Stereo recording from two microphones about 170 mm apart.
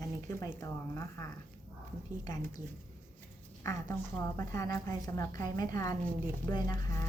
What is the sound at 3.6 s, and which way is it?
A woman's voice, 20° left (ahead or behind).